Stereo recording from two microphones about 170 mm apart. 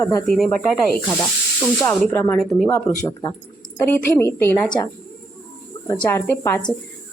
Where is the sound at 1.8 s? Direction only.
15° left (ahead or behind).